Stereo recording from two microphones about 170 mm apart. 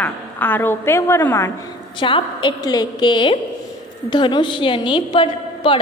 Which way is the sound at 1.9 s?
30° left (ahead or behind).